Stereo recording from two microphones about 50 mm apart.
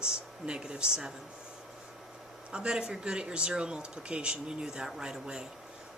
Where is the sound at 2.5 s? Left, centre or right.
Centre.